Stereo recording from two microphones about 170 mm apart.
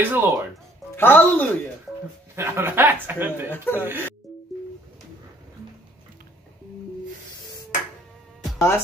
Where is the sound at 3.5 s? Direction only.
15° left (ahead or behind).